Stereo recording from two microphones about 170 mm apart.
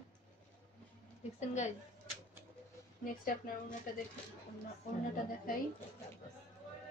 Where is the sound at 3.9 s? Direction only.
55° left (ahead or behind).